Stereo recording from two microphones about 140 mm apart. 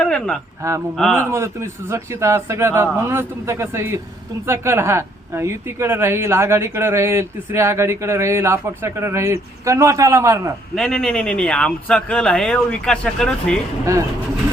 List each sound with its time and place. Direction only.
0.0 s speech: 5° left (ahead or behind)
1.3 s a man's voice: 20° right (ahead or behind)
10.8 s speech: 5° left (ahead or behind)